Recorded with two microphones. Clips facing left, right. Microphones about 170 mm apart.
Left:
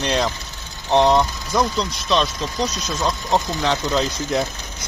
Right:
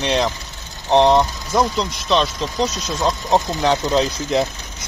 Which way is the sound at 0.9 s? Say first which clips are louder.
Right 2 dB; 25° right (ahead or behind).